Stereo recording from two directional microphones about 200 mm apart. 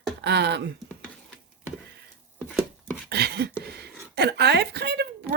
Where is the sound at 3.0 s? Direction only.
55° right (ahead or behind).